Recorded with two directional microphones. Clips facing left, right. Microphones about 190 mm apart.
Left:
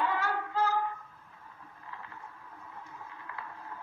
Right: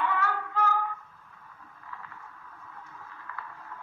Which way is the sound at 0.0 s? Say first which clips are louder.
Right 1 dB; 30° left (ahead or behind).